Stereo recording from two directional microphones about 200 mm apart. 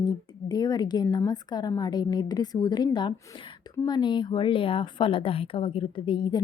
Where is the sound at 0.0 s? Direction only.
20° left (ahead or behind).